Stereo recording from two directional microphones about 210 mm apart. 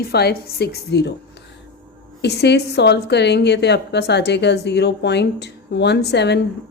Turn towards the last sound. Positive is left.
turn(degrees=55)  # may be behind; listen again after turning